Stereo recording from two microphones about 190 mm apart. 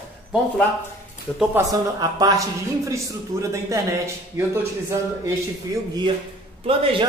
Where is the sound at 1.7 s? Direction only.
20° right (ahead or behind).